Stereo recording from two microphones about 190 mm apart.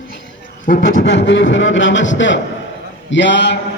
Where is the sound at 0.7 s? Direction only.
50° left (ahead or behind).